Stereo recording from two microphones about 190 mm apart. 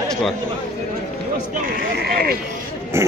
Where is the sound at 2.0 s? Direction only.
55° right (ahead or behind).